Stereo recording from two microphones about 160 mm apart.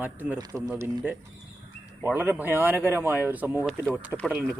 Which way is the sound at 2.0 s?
15° right (ahead or behind).